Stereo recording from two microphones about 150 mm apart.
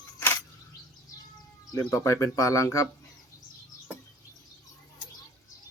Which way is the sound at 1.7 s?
20° left (ahead or behind).